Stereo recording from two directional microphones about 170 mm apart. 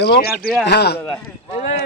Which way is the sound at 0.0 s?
75° left (ahead or behind).